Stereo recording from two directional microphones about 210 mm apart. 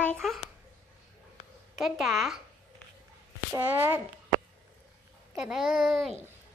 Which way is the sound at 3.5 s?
10° right (ahead or behind).